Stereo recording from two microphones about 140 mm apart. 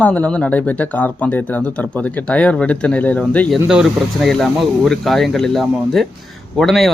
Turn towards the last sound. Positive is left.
turn(degrees=0)  # may be behind; listen again after turning